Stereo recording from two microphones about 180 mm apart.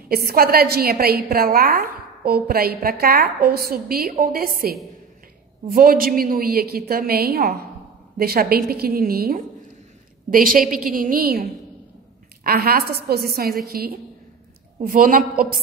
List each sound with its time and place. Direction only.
0.1 s a woman's voice: 55° right (ahead or behind)
12.4 s a woman's voice: 55° right (ahead or behind)